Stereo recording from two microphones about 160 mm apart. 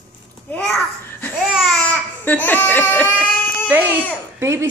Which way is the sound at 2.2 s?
10° left (ahead or behind).